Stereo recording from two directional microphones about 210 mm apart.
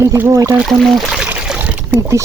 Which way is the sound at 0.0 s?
15° right (ahead or behind).